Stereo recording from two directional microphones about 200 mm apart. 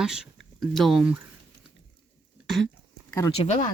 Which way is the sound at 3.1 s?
15° left (ahead or behind).